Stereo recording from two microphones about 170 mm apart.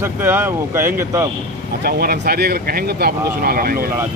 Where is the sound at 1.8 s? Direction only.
65° right (ahead or behind).